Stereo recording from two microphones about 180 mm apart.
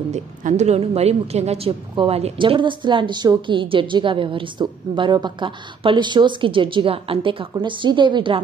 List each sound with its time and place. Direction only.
0.1 s a woman's voice: 40° right (ahead or behind)